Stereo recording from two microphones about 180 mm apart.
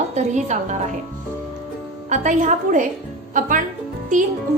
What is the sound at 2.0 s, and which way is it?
Speech, 45° right (ahead or behind).